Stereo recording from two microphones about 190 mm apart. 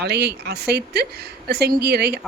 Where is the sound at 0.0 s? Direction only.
60° right (ahead or behind).